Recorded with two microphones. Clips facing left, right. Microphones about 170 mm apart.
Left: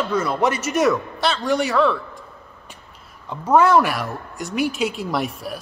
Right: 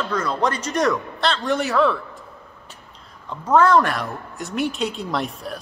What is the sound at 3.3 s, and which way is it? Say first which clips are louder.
A man's voice: left 1 dB; 10° left (ahead or behind).